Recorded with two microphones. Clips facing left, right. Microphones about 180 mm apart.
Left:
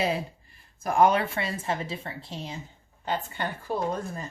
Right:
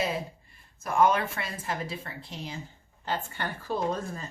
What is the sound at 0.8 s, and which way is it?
A woman's voice, 35° left (ahead or behind).